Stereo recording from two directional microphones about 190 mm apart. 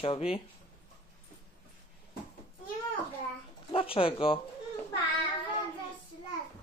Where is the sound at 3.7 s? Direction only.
30° left (ahead or behind).